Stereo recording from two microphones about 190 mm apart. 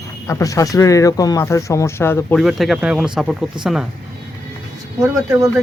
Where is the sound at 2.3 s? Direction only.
Centre (ahead or behind).